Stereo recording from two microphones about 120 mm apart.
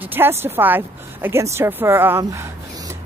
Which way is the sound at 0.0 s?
15° right (ahead or behind).